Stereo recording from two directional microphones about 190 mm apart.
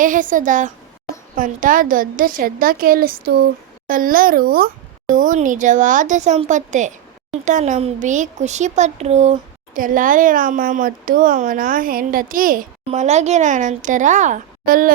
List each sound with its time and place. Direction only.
0.0 s a woman's voice: 45° right (ahead or behind)